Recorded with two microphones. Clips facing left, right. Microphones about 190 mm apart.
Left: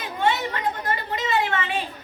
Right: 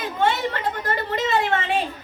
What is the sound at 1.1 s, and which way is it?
Speech, 50° right (ahead or behind).